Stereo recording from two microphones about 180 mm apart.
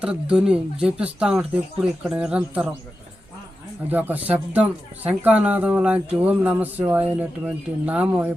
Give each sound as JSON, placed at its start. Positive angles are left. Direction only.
{"t": 0.0, "sound": "speech", "side_deg": -5}
{"t": 3.8, "sound": "speech", "side_deg": -10}